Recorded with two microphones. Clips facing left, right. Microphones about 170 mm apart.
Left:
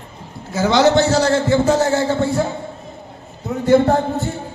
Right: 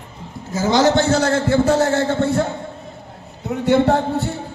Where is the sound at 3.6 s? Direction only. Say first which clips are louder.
Left 2 dB; 70° right (ahead or behind).